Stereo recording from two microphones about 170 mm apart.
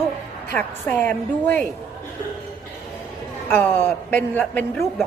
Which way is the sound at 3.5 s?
10° left (ahead or behind).